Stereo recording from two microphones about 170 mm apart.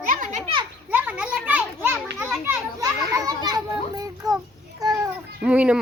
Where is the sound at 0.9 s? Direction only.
10° right (ahead or behind).